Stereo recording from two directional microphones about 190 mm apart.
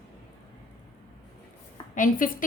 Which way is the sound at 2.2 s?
45° left (ahead or behind).